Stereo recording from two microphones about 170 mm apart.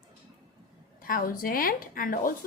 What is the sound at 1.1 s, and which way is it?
A woman's voice, 55° left (ahead or behind).